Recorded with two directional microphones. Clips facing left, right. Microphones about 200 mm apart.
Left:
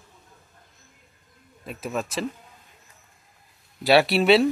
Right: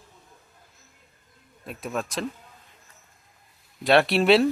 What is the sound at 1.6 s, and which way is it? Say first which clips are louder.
Speech: left 1 dB; centre (ahead or behind).